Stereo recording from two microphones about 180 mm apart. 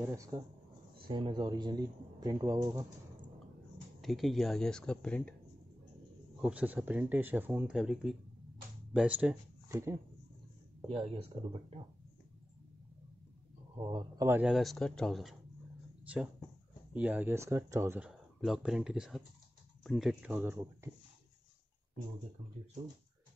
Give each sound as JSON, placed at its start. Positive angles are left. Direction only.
{"t": 0.0, "sound": "speech", "side_deg": -15}
{"t": 1.0, "sound": "speech", "side_deg": -30}
{"t": 4.0, "sound": "speech", "side_deg": 0}
{"t": 6.4, "sound": "speech", "side_deg": -10}
{"t": 10.9, "sound": "speech", "side_deg": -30}
{"t": 13.7, "sound": "speech", "side_deg": -25}
{"t": 16.9, "sound": "speech", "side_deg": -10}